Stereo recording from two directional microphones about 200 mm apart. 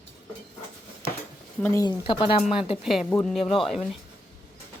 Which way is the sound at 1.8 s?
25° left (ahead or behind).